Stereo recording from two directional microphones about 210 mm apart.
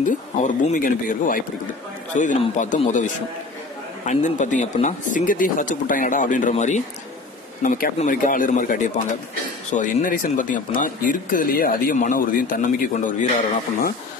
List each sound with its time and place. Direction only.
0.0 s speech: 40° left (ahead or behind)